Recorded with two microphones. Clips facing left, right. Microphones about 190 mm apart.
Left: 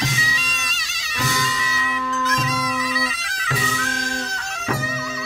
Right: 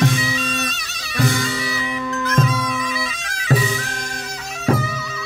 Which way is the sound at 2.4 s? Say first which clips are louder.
Right 4 dB; 55° right (ahead or behind).